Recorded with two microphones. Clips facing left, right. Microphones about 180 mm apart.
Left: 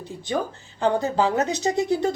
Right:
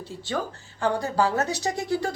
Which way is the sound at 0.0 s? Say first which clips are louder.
Left 3 dB; 15° left (ahead or behind).